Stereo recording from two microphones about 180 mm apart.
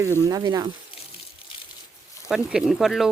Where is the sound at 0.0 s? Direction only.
15° right (ahead or behind).